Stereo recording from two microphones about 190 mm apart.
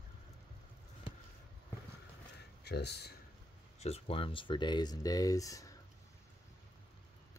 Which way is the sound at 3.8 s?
30° left (ahead or behind).